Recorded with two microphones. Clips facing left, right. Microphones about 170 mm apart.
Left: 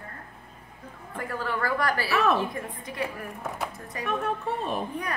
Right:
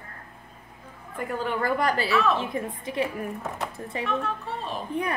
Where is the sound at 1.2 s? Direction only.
20° right (ahead or behind).